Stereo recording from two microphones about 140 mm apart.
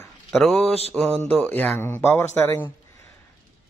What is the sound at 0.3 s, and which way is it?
Speech, centre (ahead or behind).